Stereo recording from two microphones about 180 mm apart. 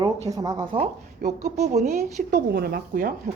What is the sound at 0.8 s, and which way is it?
Speech, 40° right (ahead or behind).